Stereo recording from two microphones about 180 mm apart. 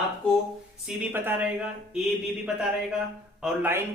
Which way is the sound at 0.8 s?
10° right (ahead or behind).